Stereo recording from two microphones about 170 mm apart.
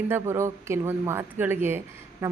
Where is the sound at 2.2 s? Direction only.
15° right (ahead or behind).